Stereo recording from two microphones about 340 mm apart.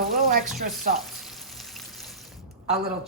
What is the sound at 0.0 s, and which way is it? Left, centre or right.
Frying, right.